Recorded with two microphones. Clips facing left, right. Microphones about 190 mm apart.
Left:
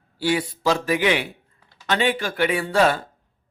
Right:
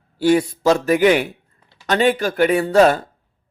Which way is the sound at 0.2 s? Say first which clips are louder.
Right 7 dB; 45° right (ahead or behind).